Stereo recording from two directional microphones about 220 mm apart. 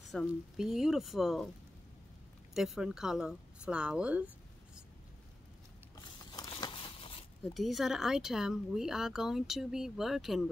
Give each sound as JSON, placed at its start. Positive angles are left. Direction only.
{"t": 0.1, "sound": "speech", "side_deg": 0}
{"t": 2.5, "sound": "speech", "side_deg": 0}
{"t": 5.9, "sound": "a sound", "side_deg": 20}
{"t": 7.5, "sound": "speech", "side_deg": 0}